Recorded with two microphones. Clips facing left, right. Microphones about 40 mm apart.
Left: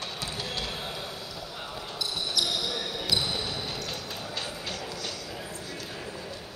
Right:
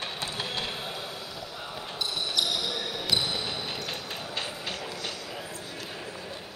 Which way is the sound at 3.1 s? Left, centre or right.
Centre.